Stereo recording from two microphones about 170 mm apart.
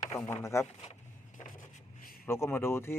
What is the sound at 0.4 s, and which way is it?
Speech, 15° left (ahead or behind).